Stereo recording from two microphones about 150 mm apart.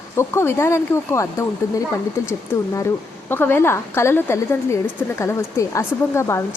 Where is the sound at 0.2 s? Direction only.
15° left (ahead or behind).